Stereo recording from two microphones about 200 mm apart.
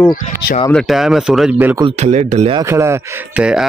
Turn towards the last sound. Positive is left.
turn(degrees=-5)  # may be behind; listen again after turning